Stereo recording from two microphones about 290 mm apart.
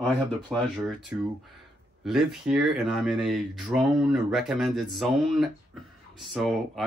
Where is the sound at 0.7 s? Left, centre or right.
Centre.